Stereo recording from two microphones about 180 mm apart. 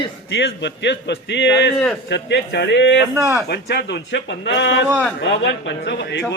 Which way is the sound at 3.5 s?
70° left (ahead or behind).